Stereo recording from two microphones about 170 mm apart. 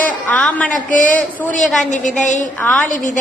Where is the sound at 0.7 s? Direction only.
50° left (ahead or behind).